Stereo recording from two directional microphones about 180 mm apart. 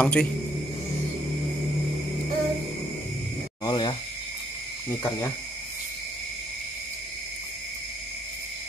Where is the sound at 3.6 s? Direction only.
25° left (ahead or behind).